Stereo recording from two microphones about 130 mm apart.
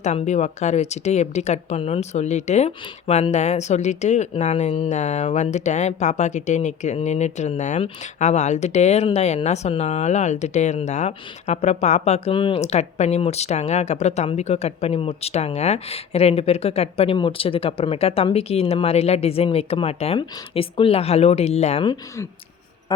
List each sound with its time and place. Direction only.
0.0 s speech: 60° left (ahead or behind)
12.3 s speech: 40° left (ahead or behind)
12.6 s speech: 60° left (ahead or behind)